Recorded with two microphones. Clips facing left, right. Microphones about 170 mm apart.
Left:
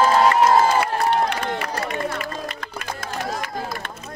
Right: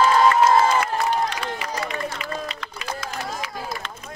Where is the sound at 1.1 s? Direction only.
55° left (ahead or behind).